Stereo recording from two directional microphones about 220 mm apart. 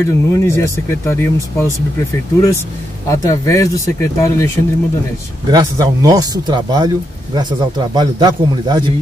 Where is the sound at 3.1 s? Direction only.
15° left (ahead or behind).